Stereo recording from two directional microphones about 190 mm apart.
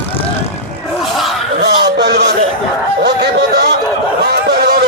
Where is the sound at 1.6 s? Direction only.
60° right (ahead or behind).